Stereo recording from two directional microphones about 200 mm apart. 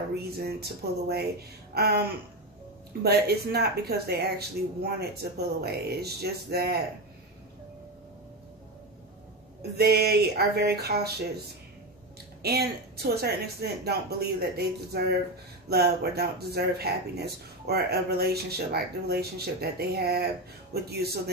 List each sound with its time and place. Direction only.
0.1 s speech: 55° right (ahead or behind)
9.6 s speech: 55° right (ahead or behind)
12.4 s speech: 50° right (ahead or behind)